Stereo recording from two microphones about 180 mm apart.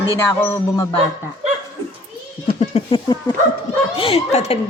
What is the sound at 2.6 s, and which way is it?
Speech, 30° left (ahead or behind).